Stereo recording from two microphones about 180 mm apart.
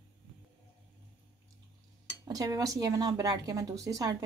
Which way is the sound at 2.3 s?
20° right (ahead or behind).